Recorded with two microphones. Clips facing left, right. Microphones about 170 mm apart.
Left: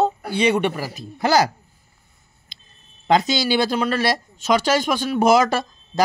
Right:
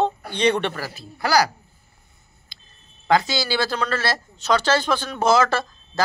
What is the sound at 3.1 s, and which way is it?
A man's voice, 20° left (ahead or behind).